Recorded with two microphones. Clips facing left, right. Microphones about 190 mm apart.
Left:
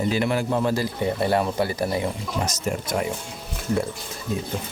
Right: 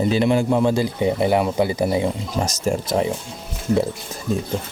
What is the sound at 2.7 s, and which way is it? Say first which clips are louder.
Speech: right 6 dB; 35° right (ahead or behind).